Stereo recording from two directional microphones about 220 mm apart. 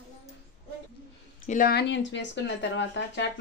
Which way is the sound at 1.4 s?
40° left (ahead or behind).